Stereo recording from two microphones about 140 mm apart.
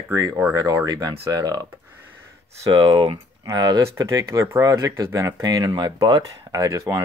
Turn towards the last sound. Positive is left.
turn(degrees=-25)  # may be behind; listen again after turning